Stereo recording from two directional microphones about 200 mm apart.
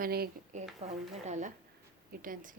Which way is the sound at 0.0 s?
50° right (ahead or behind).